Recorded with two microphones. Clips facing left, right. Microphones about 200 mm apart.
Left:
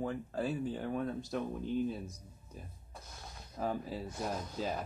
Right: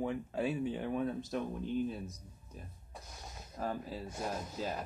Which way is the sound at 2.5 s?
Centre (ahead or behind).